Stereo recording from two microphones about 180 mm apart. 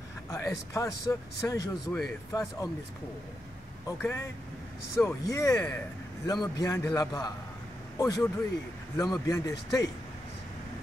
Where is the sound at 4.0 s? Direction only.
15° left (ahead or behind).